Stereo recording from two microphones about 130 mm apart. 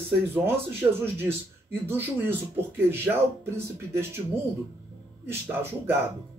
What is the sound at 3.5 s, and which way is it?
Speech, 20° right (ahead or behind).